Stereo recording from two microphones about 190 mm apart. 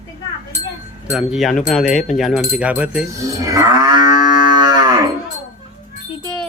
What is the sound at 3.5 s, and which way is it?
Moo, 20° right (ahead or behind).